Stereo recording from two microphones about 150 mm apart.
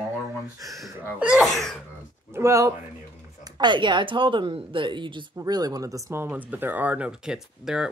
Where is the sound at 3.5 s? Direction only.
30° right (ahead or behind).